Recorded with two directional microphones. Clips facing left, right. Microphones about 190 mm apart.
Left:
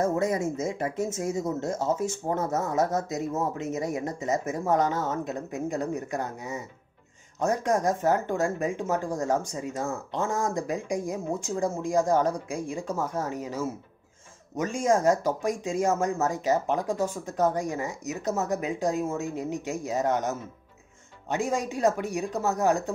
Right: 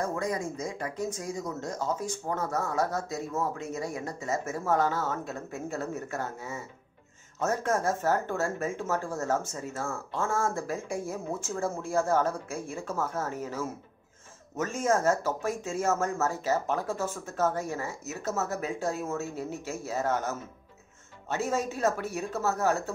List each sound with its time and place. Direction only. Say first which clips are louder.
0.0 s speech: left 5 dB; 25° left (ahead or behind)